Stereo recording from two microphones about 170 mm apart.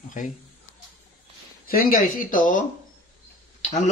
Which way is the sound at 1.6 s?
60° left (ahead or behind).